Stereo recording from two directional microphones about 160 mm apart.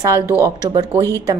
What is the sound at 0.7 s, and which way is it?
Speech, 25° right (ahead or behind).